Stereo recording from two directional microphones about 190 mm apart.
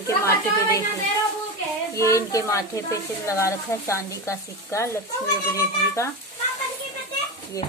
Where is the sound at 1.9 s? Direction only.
15° left (ahead or behind).